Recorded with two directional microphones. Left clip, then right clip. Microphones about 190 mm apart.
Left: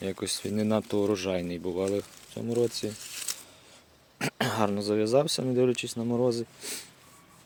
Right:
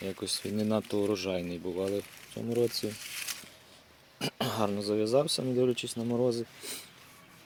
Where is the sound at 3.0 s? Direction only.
40° left (ahead or behind).